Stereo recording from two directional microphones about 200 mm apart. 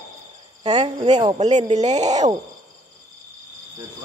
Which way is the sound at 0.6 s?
30° right (ahead or behind).